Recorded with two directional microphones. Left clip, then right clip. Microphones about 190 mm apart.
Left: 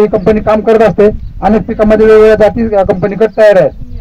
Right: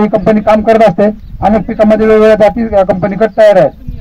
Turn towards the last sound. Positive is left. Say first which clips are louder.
# even
turn(degrees=40)  # may be behind; listen again after turning